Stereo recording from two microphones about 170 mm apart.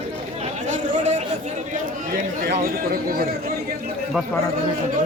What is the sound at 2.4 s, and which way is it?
A man's voice, 65° right (ahead or behind).